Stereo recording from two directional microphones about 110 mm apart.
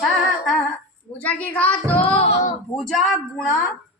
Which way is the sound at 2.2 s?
75° left (ahead or behind).